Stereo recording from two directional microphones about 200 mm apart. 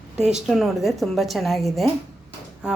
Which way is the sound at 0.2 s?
5° right (ahead or behind).